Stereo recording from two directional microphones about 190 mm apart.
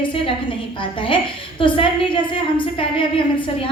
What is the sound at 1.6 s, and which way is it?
A woman's voice, 25° left (ahead or behind).